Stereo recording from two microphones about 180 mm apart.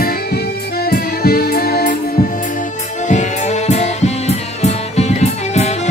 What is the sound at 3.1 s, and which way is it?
Music, 40° left (ahead or behind).